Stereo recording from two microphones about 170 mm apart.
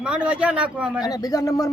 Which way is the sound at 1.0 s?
20° left (ahead or behind).